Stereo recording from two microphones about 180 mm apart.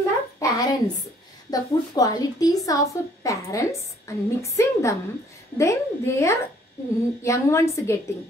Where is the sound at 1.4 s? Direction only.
20° left (ahead or behind).